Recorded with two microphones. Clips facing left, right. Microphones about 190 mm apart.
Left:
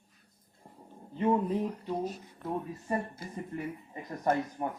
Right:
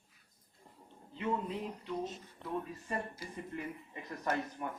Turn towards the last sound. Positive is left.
turn(degrees=35)  # may be behind; listen again after turning